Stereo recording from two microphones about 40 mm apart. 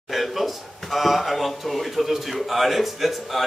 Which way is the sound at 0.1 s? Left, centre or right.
Centre.